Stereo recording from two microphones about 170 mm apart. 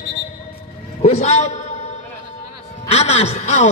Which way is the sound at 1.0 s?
40° left (ahead or behind).